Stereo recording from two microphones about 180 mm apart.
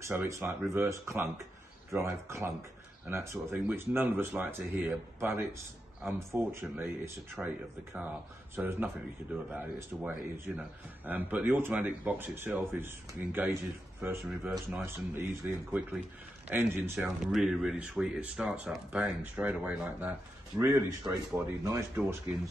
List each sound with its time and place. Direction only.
0.0 s speech: 15° right (ahead or behind)